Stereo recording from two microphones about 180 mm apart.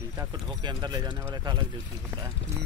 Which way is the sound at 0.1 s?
20° right (ahead or behind).